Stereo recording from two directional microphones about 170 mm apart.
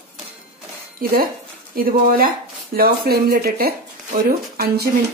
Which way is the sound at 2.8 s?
65° right (ahead or behind).